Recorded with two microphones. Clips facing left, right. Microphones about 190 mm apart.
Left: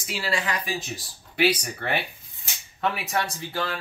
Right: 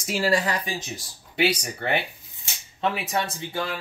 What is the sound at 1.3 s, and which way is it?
Speech, 25° right (ahead or behind).